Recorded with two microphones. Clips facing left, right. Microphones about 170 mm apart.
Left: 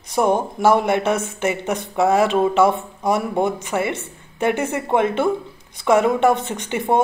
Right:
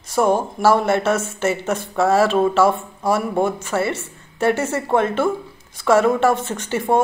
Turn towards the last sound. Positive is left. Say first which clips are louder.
# right 1 dB
turn(degrees=20)  # may be behind; listen again after turning